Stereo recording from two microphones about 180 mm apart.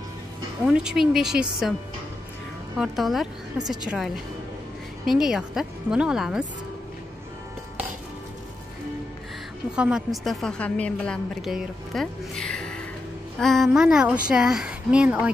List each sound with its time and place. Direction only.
0.7 s a woman's voice: 5° right (ahead or behind)
2.8 s a woman's voice: centre (ahead or behind)
9.8 s a woman's voice: 5° right (ahead or behind)